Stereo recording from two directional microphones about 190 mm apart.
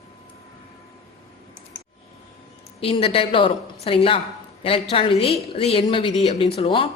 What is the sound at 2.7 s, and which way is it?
A woman's voice, 30° left (ahead or behind).